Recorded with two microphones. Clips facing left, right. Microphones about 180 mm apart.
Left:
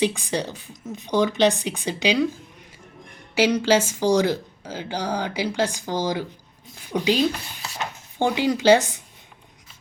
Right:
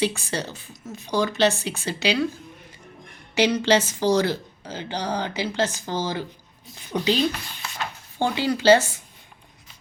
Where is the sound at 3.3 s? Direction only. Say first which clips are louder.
Left 1 dB; 10° left (ahead or behind).